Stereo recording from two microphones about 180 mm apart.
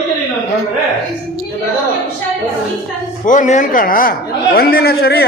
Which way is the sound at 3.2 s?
45° left (ahead or behind).